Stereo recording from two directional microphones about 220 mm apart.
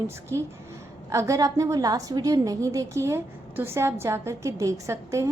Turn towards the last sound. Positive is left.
turn(degrees=-15)  # may be behind; listen again after turning